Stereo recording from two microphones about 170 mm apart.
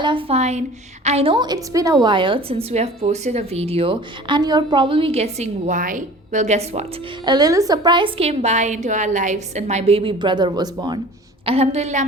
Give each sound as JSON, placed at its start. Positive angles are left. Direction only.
{"t": 0.0, "sound": "a woman's voice", "side_deg": -30}
{"t": 7.3, "sound": "a woman's voice", "side_deg": -20}
{"t": 11.4, "sound": "a woman's voice", "side_deg": -35}